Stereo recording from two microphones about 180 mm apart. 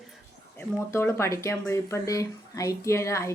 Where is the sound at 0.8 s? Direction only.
15° left (ahead or behind).